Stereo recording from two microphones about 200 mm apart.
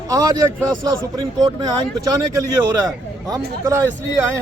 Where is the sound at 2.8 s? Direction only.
15° right (ahead or behind).